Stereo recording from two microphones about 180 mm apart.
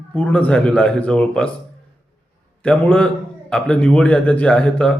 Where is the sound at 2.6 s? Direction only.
5° left (ahead or behind).